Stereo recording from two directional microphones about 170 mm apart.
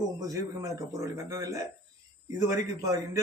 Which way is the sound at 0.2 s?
20° right (ahead or behind).